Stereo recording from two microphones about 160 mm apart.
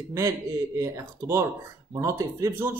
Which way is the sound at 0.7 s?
20° right (ahead or behind).